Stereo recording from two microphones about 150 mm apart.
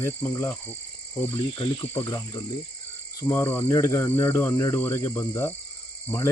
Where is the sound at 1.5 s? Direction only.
30° left (ahead or behind).